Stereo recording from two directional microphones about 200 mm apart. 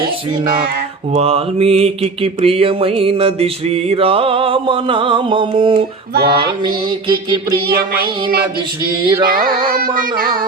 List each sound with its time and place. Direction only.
1.1 s mantra: 30° right (ahead or behind)
6.1 s carnatic music: 50° right (ahead or behind)
9.2 s carnatic music: 45° right (ahead or behind)